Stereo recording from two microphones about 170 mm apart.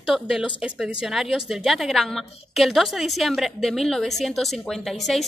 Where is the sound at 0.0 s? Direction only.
Centre (ahead or behind).